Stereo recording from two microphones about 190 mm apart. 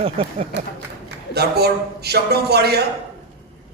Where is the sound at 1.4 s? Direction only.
55° right (ahead or behind).